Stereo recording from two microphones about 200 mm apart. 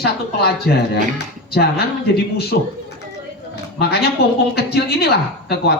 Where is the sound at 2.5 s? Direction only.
55° left (ahead or behind).